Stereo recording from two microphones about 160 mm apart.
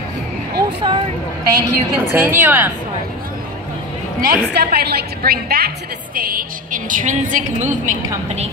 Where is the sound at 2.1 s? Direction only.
15° right (ahead or behind).